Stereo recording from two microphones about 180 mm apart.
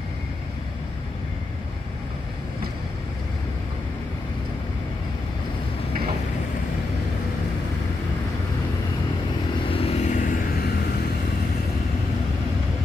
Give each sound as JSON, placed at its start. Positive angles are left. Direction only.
{"t": 9.7, "sound": "vehicle", "side_deg": 35}